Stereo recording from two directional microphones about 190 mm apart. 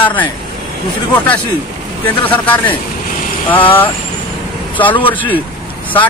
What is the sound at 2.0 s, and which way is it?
A man's voice, 10° left (ahead or behind).